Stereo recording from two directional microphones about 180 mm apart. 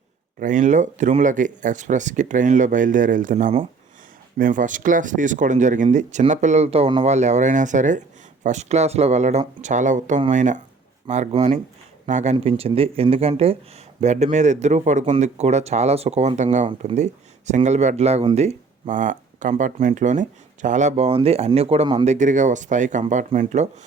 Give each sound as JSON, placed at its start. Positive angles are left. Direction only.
{"t": 0.3, "sound": "a man's voice", "side_deg": -45}